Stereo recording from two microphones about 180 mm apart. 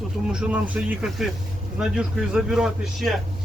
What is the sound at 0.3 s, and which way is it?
Speech, 5° right (ahead or behind).